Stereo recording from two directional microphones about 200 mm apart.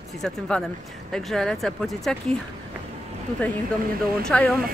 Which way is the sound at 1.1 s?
5° left (ahead or behind).